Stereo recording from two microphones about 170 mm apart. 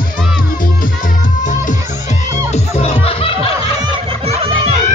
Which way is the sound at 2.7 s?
35° left (ahead or behind).